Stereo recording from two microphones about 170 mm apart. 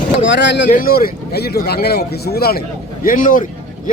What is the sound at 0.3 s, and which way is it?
Speech, 90° left.